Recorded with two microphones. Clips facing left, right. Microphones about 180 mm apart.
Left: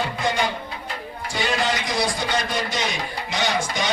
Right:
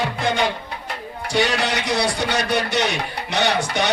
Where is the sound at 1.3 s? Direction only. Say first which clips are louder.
Right 3 dB; 75° right (ahead or behind).